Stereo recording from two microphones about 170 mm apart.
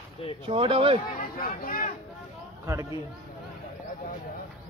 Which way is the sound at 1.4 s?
55° left (ahead or behind).